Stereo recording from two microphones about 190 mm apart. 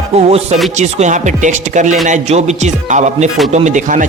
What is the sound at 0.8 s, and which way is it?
Speech, 40° right (ahead or behind).